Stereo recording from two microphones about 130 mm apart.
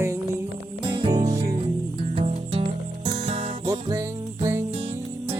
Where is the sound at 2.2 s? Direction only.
55° right (ahead or behind).